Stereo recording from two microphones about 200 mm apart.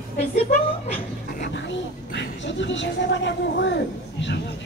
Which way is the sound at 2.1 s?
60° left (ahead or behind).